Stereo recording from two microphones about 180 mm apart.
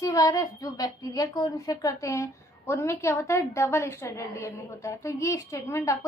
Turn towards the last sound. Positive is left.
turn(degrees=15)  # may be behind; listen again after turning